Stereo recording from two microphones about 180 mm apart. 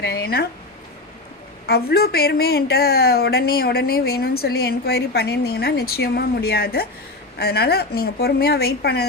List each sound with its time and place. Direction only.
0.0 s a woman's voice: 60° left (ahead or behind)
1.6 s a woman's voice: 60° left (ahead or behind)